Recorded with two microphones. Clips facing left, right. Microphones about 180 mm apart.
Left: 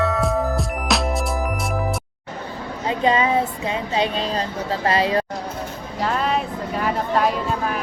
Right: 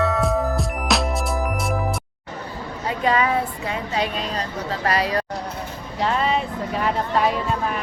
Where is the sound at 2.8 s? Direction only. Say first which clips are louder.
Left 2 dB; 20° left (ahead or behind).